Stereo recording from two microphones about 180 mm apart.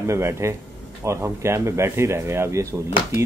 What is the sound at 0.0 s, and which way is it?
Cutlery, 15° right (ahead or behind).